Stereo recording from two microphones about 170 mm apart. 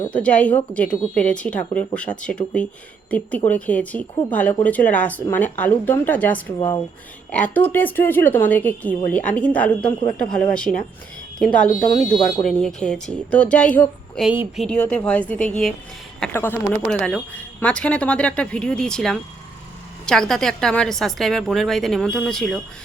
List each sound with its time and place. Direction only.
0.1 s speech: 5° left (ahead or behind)
6.6 s speech: 25° left (ahead or behind)
7.5 s a woman's voice: 10° left (ahead or behind)
14.3 s a woman's voice: 5° right (ahead or behind)